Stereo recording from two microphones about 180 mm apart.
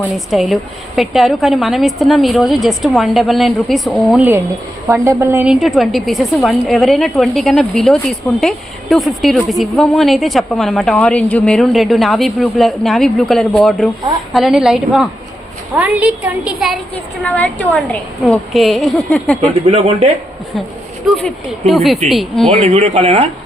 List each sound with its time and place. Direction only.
0.0 s a woman's voice: centre (ahead or behind)
4.9 s a woman's voice: 15° right (ahead or behind); by 19.5 s centre (ahead or behind)
19.6 s speech: 35° right (ahead or behind)
21.1 s a woman's voice: centre (ahead or behind)
22.5 s speech: 35° right (ahead or behind)